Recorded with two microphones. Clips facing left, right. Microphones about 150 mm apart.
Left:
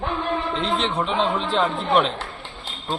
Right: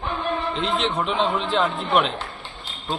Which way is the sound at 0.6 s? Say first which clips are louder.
Right 1 dB; 35° left (ahead or behind).